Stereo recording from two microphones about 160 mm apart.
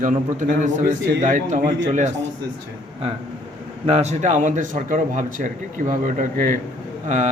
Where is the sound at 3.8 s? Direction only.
40° right (ahead or behind).